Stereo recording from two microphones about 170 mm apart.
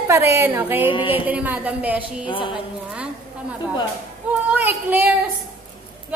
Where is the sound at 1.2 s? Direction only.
10° right (ahead or behind).